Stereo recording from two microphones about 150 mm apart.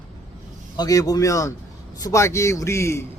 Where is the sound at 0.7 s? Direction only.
25° left (ahead or behind).